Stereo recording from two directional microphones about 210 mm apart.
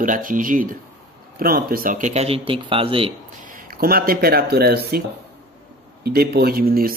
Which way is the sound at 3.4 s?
40° right (ahead or behind).